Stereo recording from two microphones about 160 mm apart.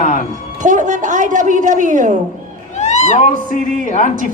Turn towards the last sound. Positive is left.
turn(degrees=50)  # may be behind; listen again after turning